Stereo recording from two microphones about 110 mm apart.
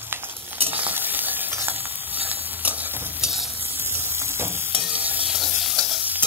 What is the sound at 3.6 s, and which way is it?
Stir, 20° right (ahead or behind).